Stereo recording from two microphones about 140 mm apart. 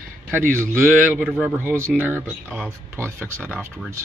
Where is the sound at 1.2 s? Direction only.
Centre (ahead or behind).